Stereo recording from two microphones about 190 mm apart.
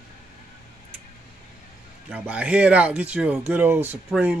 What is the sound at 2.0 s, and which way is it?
Speech, 5° right (ahead or behind).